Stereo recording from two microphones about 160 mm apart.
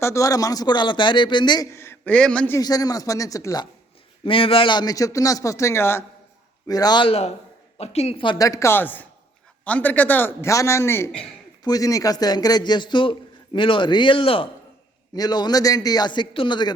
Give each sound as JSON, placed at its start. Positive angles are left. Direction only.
{"t": 0.0, "sound": "a man's voice", "side_deg": 20}
{"t": 2.6, "sound": "a man's voice", "side_deg": 25}
{"t": 4.2, "sound": "a man's voice", "side_deg": 35}